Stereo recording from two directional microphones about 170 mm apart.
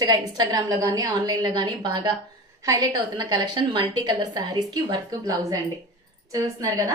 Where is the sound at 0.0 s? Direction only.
25° right (ahead or behind).